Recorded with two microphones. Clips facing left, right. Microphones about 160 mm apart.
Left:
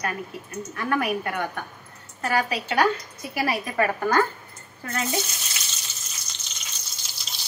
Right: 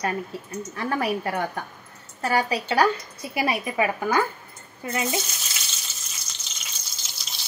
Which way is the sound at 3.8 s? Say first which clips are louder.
Left 2 dB; 10° right (ahead or behind).